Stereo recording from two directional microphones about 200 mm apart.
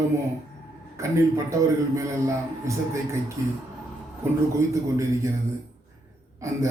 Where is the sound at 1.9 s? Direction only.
15° right (ahead or behind).